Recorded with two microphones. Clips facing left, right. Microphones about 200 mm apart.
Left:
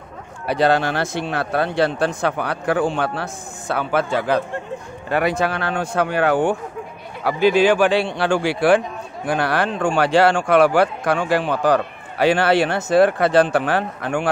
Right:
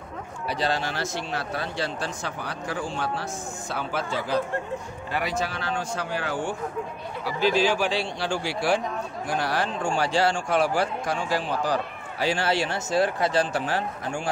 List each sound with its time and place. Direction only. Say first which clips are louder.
0.5 s a man's voice: left 10 dB; 60° left (ahead or behind)